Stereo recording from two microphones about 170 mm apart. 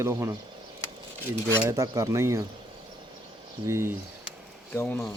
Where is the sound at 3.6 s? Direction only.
15° right (ahead or behind).